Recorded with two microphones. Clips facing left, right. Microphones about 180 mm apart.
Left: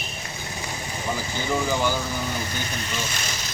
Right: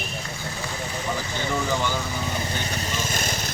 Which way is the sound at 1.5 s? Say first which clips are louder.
Left 2 dB; 10° left (ahead or behind).